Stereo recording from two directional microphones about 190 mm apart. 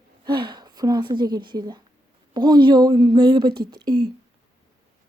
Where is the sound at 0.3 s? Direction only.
25° right (ahead or behind).